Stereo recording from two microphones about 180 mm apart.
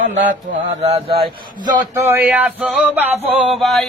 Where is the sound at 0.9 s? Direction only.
30° right (ahead or behind).